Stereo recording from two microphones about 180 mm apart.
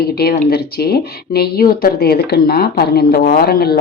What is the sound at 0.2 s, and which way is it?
Speech, 60° left (ahead or behind).